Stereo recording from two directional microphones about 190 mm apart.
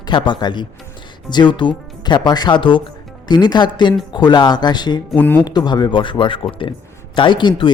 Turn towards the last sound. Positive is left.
turn(degrees=25)  # may be behind; listen again after turning